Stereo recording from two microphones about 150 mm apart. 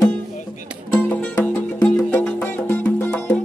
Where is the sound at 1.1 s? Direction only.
10° left (ahead or behind).